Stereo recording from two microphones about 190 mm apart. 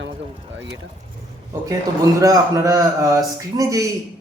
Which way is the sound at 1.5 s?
15° right (ahead or behind).